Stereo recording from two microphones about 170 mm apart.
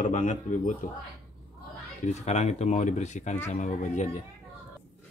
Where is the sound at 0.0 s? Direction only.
50° left (ahead or behind).